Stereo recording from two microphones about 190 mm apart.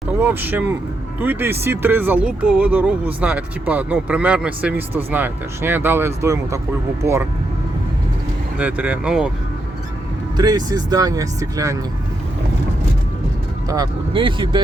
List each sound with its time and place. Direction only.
0.2 s speech: 10° right (ahead or behind)
8.5 s speech: 10° right (ahead or behind)
10.3 s speech: 20° right (ahead or behind)
13.7 s speech: 20° right (ahead or behind)